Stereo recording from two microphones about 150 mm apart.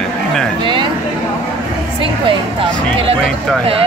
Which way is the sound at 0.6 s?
30° right (ahead or behind).